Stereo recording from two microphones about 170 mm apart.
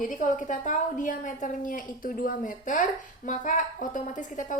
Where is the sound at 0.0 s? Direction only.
50° left (ahead or behind).